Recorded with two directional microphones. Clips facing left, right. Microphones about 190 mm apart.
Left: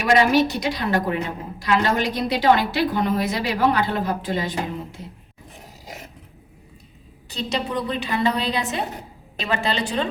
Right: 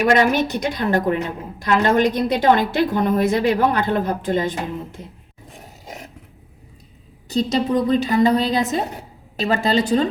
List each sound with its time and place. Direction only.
0.0 s a woman's voice: 50° right (ahead or behind)
7.3 s a woman's voice: 40° right (ahead or behind)